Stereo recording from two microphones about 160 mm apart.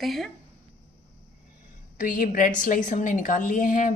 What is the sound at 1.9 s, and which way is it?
A woman's voice, 60° left (ahead or behind).